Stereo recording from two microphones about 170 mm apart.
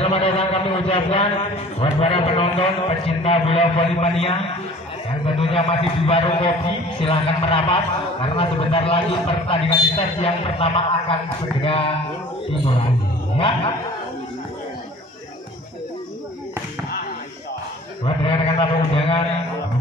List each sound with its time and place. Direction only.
0.0 s a man's voice: 35° left (ahead or behind)
18.0 s a man's voice: 35° left (ahead or behind)